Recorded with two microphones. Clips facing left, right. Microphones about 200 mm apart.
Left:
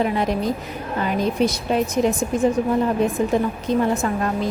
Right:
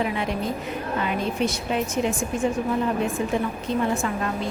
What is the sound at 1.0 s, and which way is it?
A woman's voice, 40° left (ahead or behind).